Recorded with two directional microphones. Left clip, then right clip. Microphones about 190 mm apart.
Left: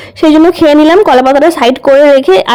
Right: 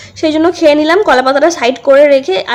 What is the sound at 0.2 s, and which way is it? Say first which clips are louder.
Speech: left 5 dB; 40° left (ahead or behind).